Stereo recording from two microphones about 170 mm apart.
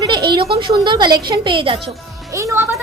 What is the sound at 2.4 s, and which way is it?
Speech, 15° right (ahead or behind).